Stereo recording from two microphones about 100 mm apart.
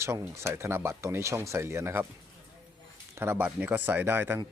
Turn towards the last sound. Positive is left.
turn(degrees=-25)  # may be behind; listen again after turning